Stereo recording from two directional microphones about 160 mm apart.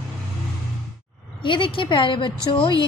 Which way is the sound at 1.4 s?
30° left (ahead or behind).